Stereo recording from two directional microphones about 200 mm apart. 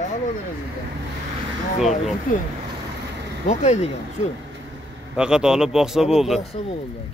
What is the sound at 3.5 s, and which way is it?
Speech, 35° left (ahead or behind).